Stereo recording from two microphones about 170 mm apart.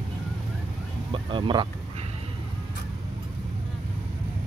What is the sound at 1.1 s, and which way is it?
Speech, 30° right (ahead or behind).